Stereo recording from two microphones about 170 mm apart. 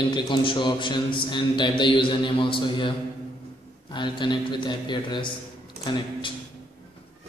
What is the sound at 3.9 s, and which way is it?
A man's voice, 30° left (ahead or behind).